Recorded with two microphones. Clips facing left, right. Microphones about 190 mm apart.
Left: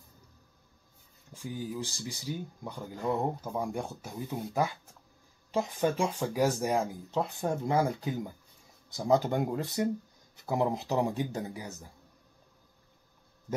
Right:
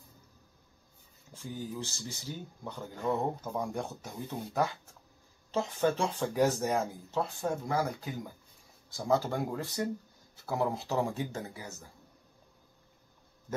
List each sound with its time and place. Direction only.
1.3 s speech: 10° left (ahead or behind)
5.5 s speech: 10° left (ahead or behind)